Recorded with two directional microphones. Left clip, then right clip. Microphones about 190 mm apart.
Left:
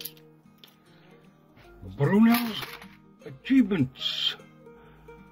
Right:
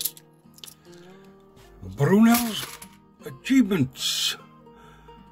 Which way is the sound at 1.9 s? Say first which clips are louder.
Right 3 dB; 20° right (ahead or behind).